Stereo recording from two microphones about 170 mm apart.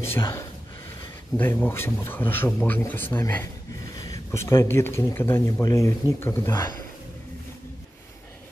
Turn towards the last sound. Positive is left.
turn(degrees=15)  # may be behind; listen again after turning